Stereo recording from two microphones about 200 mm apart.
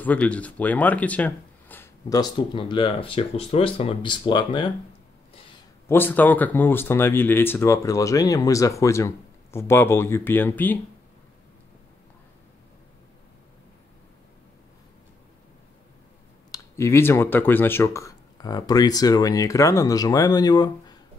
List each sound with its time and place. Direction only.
0.0 s speech: 5° left (ahead or behind); by 4.7 s 25° left (ahead or behind)
5.9 s speech: 10° left (ahead or behind)
16.5 s speech: 15° left (ahead or behind)